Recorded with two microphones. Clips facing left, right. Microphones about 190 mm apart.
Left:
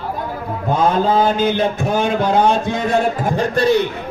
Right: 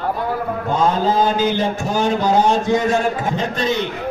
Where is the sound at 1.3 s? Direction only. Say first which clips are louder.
Left 1 dB; 55° left (ahead or behind).